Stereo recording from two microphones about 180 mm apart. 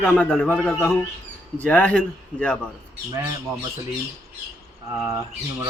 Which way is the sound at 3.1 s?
15° right (ahead or behind).